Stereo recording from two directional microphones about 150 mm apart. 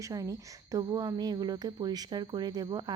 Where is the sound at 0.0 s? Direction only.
20° right (ahead or behind).